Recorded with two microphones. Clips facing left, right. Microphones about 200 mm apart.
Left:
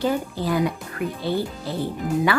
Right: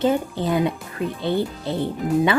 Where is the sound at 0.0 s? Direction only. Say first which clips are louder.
Right 3 dB; 20° right (ahead or behind).